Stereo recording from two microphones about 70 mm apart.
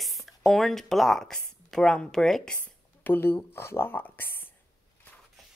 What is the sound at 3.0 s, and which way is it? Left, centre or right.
Speech, left.